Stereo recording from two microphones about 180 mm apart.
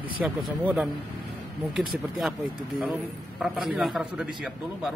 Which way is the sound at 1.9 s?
5° right (ahead or behind).